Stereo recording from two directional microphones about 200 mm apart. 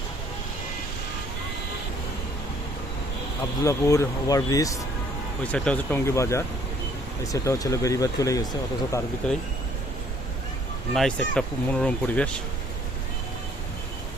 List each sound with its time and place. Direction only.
3.6 s speech: 15° left (ahead or behind)
5.4 s speech: 5° left (ahead or behind)
9.2 s speech: 5° left (ahead or behind)
10.9 s speech: 5° left (ahead or behind)